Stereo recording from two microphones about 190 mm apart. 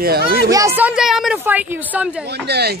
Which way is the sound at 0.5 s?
10° right (ahead or behind).